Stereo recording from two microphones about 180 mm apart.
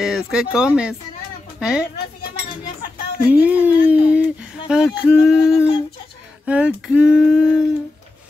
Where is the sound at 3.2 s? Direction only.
10° right (ahead or behind).